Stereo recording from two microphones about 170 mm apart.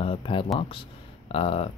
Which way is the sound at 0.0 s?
30° left (ahead or behind).